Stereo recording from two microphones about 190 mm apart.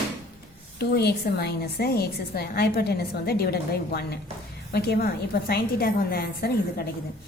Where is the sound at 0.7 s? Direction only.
60° left (ahead or behind).